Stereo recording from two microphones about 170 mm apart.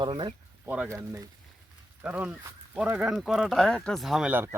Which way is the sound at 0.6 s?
10° right (ahead or behind).